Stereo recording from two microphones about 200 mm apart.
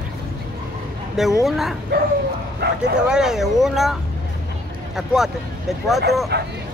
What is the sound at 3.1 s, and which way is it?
Speech, centre (ahead or behind).